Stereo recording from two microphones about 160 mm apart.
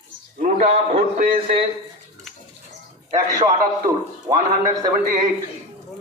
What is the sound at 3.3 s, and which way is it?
Speech, 20° right (ahead or behind).